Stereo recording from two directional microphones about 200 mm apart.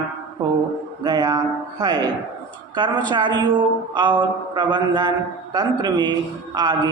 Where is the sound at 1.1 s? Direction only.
20° right (ahead or behind).